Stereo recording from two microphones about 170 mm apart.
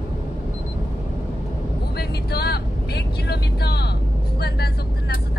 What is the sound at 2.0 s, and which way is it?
Vehicle, 70° left (ahead or behind).